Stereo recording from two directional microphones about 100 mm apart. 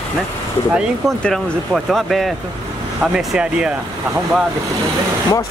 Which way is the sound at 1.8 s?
Centre (ahead or behind).